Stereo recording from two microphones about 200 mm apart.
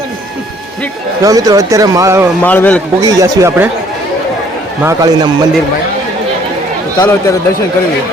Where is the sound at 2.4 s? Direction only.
10° left (ahead or behind).